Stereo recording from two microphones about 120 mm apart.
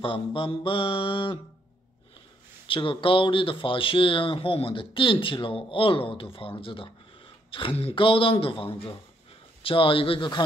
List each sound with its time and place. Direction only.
0.0 s speech: 45° left (ahead or behind)
2.7 s speech: 45° left (ahead or behind)